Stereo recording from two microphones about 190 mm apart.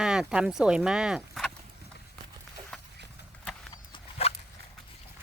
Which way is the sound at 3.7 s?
30° left (ahead or behind).